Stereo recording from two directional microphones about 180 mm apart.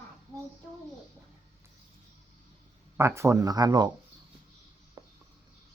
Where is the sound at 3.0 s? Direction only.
15° right (ahead or behind).